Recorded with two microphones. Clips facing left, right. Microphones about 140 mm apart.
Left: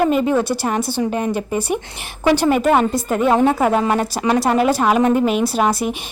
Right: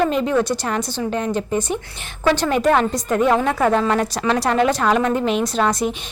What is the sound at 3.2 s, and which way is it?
Speech, 25° left (ahead or behind).